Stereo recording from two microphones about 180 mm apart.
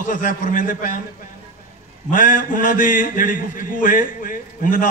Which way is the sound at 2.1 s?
45° left (ahead or behind).